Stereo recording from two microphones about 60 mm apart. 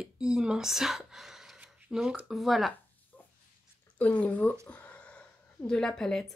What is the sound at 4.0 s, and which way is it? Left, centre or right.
Speech, left.